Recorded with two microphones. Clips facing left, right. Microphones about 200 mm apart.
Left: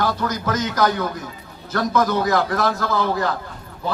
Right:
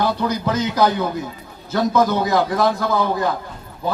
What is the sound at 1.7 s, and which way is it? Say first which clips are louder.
A man's voice: right 2 dB; 25° right (ahead or behind).